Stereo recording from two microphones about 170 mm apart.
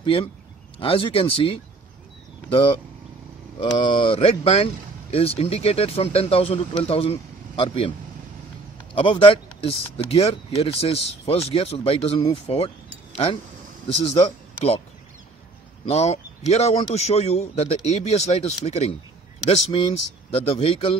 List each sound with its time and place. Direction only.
0.0 s a man's voice: 30° left (ahead or behind)
8.9 s speech: 30° left (ahead or behind)
15.9 s speech: 40° left (ahead or behind)